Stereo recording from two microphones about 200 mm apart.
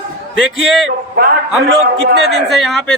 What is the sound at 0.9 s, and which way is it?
Speech, 50° right (ahead or behind).